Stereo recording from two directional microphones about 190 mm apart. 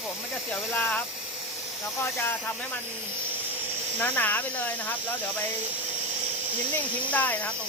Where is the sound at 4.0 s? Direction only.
10° left (ahead or behind).